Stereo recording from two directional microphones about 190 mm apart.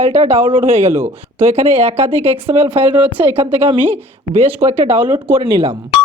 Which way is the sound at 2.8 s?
10° right (ahead or behind).